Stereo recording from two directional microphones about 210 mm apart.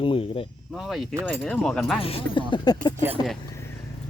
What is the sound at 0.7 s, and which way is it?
Speech, centre (ahead or behind).